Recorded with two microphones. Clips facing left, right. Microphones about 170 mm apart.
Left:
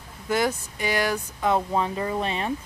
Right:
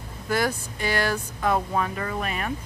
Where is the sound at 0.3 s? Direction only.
20° left (ahead or behind).